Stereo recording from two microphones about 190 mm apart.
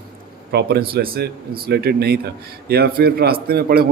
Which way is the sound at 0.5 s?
60° right (ahead or behind).